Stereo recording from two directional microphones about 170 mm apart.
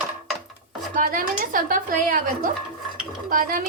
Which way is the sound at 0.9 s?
55° right (ahead or behind).